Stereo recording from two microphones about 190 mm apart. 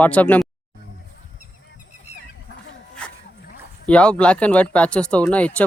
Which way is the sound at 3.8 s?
5° left (ahead or behind).